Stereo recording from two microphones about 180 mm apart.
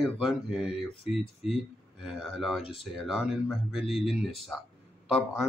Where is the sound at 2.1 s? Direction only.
Centre (ahead or behind).